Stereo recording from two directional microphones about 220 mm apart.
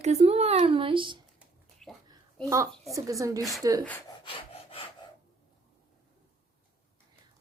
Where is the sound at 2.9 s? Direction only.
15° right (ahead or behind).